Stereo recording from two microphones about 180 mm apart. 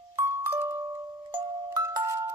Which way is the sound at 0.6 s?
15° right (ahead or behind).